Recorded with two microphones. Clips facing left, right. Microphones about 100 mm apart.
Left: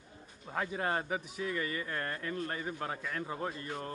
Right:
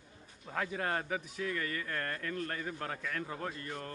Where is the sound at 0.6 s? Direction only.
15° left (ahead or behind).